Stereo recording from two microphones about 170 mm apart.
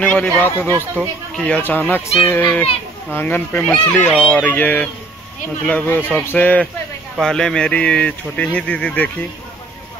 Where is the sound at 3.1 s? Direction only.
10° left (ahead or behind).